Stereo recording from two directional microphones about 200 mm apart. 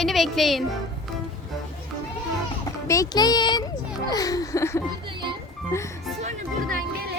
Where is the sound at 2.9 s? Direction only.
20° left (ahead or behind).